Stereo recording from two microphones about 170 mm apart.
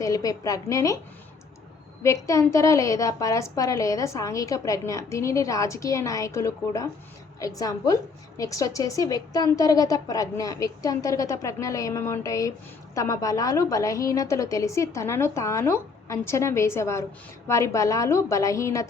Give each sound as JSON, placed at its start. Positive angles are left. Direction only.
{"t": 0.0, "sound": "a woman's voice", "side_deg": 20}
{"t": 2.0, "sound": "a woman's voice", "side_deg": 15}